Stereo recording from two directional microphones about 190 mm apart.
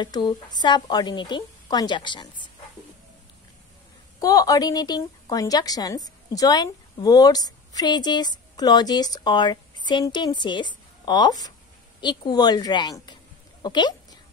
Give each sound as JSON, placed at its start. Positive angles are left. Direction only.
{"t": 0.0, "sound": "speech", "side_deg": 20}
{"t": 4.2, "sound": "a woman's voice", "side_deg": 20}
{"t": 13.6, "sound": "a sound", "side_deg": 20}